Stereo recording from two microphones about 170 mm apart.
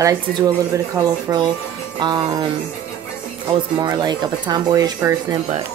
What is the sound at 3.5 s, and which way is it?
Speech, 30° right (ahead or behind).